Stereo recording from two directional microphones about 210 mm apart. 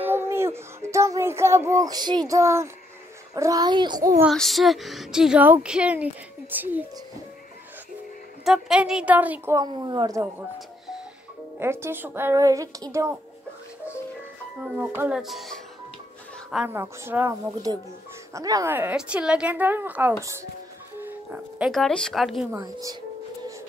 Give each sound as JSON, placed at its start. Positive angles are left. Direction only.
{"t": 0.0, "sound": "a woman's voice", "side_deg": -10}
{"t": 4.2, "sound": "a woman's voice", "side_deg": 0}
{"t": 8.5, "sound": "a woman's voice", "side_deg": 0}
{"t": 11.6, "sound": "a woman's voice", "side_deg": -10}
{"t": 14.8, "sound": "a woman's voice", "side_deg": -5}
{"t": 22.6, "sound": "a woman's voice", "side_deg": -15}